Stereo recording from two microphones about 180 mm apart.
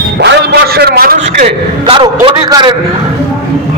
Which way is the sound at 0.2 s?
65° right (ahead or behind).